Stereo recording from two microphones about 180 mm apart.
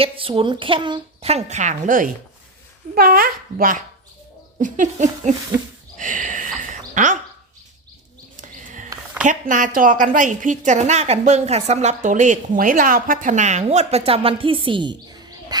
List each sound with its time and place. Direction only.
0.0 s a woman's voice: 30° right (ahead or behind)
6.0 s a sound: 45° right (ahead or behind)
8.4 s horse: 45° right (ahead or behind)
9.2 s a woman's voice: 45° right (ahead or behind); by 14.9 s 25° right (ahead or behind)